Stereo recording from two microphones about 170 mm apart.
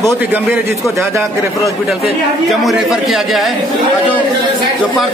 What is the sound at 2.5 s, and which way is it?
A man's voice, centre (ahead or behind).